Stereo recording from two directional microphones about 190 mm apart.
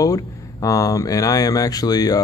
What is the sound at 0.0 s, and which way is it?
Speech, 15° left (ahead or behind).